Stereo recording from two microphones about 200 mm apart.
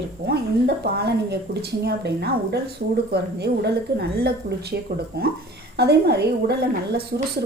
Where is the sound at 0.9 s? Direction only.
55° right (ahead or behind).